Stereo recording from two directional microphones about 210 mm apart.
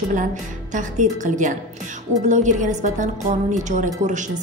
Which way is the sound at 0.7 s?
35° right (ahead or behind).